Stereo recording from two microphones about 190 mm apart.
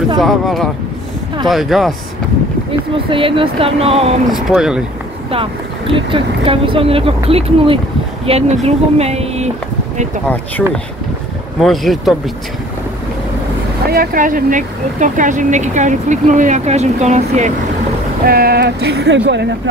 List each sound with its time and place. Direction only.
0.2 s speech: centre (ahead or behind)
3.1 s speech: 25° right (ahead or behind)
4.3 s speech: 5° right (ahead or behind)
5.3 s speech: 30° right (ahead or behind)
10.2 s speech: 5° left (ahead or behind)
13.9 s speech: 45° right (ahead or behind)
18.2 s speech: 55° right (ahead or behind)